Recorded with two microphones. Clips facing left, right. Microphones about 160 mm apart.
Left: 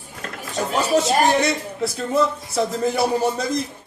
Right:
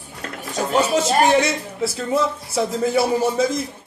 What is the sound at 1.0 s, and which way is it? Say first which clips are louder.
A woman's voice: right 1 dB; centre (ahead or behind).